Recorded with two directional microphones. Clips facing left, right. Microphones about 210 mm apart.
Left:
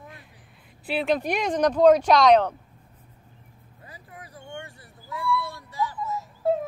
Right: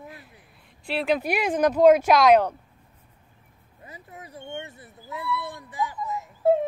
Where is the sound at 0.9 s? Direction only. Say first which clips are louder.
Even; centre (ahead or behind).